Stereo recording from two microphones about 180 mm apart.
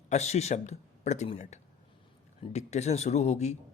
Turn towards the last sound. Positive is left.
turn(degrees=40)  # may be behind; listen again after turning